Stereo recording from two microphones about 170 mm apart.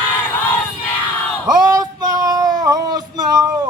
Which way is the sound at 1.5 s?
20° right (ahead or behind).